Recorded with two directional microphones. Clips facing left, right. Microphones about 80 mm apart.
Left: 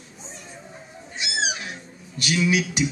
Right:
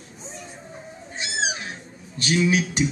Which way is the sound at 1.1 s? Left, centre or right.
Right.